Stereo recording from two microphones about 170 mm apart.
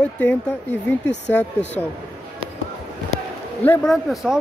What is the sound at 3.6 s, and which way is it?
Speech, 10° left (ahead or behind).